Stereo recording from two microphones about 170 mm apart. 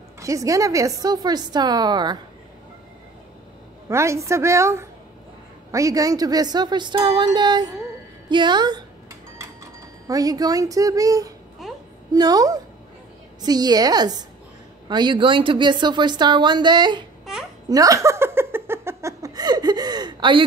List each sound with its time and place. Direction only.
0.2 s speech: 20° right (ahead or behind)
3.9 s a woman's voice: 15° right (ahead or behind)
8.3 s dishes: 25° right (ahead or behind)
11.6 s a sound: centre (ahead or behind)
12.1 s speech: 20° right (ahead or behind)
17.6 s laughter: 20° right (ahead or behind)